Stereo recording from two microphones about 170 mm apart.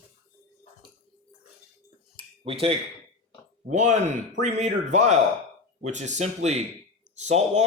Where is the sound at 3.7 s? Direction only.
45° right (ahead or behind).